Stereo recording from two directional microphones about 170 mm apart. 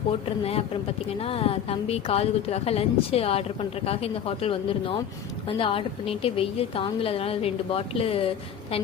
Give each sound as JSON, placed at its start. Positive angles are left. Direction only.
{"t": 0.4, "sound": "a woman's voice", "side_deg": 35}